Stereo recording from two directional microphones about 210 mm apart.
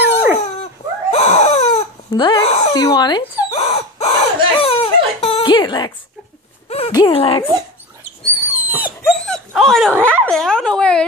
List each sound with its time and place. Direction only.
0.0 s dog: 10° right (ahead or behind)
1.1 s crying: 30° left (ahead or behind)
5.2 s chuckle: 25° left (ahead or behind)
6.7 s speech: 25° left (ahead or behind)
8.5 s dog: 45° left (ahead or behind)
8.8 s dog: centre (ahead or behind)